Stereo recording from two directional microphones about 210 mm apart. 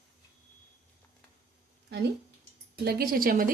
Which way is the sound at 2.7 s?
45° right (ahead or behind).